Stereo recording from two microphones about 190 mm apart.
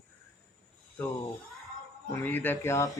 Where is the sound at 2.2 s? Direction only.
10° left (ahead or behind).